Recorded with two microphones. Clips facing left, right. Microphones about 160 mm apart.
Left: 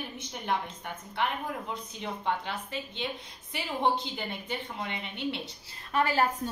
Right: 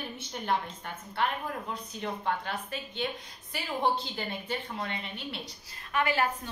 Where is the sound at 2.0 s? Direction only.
20° left (ahead or behind).